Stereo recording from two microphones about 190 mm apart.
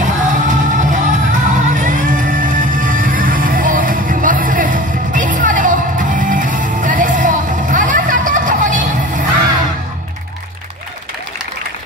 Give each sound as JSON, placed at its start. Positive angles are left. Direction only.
{"t": 0.0, "sound": "music", "side_deg": -40}